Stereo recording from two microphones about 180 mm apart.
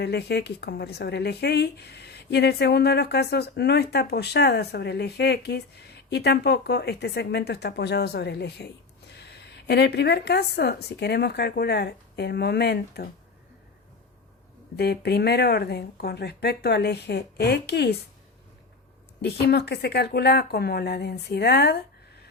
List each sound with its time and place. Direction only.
0.0 s speech: 65° left (ahead or behind)
14.8 s speech: 65° left (ahead or behind)
19.2 s speech: 65° left (ahead or behind)